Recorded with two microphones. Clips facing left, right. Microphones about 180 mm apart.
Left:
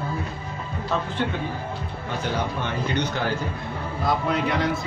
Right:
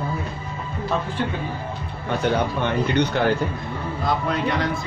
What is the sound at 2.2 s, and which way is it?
Speech, 60° right (ahead or behind).